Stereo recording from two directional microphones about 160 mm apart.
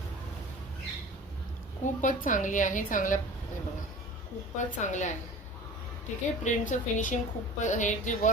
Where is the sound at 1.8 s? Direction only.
55° left (ahead or behind).